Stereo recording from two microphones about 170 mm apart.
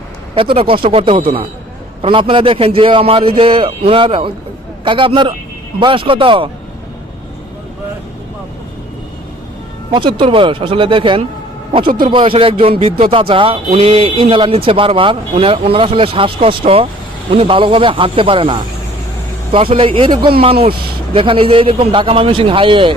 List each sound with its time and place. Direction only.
0.5 s speech: 30° right (ahead or behind)
9.9 s speech: 30° right (ahead or behind)